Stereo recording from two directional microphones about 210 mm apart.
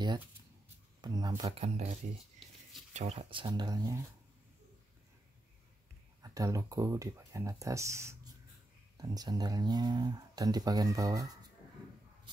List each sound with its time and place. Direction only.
1.0 s speech: 20° right (ahead or behind)
1.6 s speech: 30° right (ahead or behind)
6.2 s speech: 15° right (ahead or behind)